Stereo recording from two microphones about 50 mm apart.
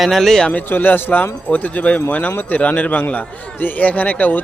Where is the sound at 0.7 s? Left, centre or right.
Left.